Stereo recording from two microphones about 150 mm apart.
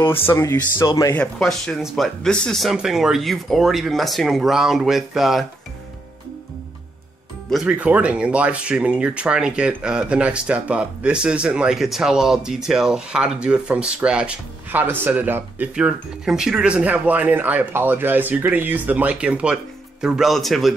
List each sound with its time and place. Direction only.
0.3 s a man's voice: 15° left (ahead or behind)
1.1 s speech: 5° left (ahead or behind)
7.4 s speech: 5° right (ahead or behind)